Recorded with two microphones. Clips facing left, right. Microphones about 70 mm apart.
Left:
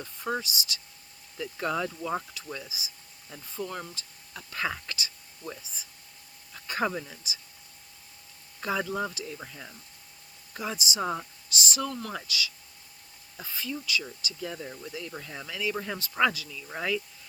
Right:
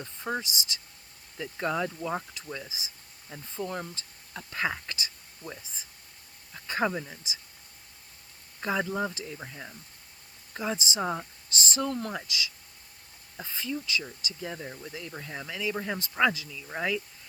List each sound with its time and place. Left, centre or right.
0.0 s speech: right
1.7 s speech: centre
6.5 s a sound: right
7.0 s speech: right
8.6 s speech: right
9.1 s speech: right
10.8 s speech: right
11.0 s speech: centre
11.4 s speech: right
16.5 s speech: centre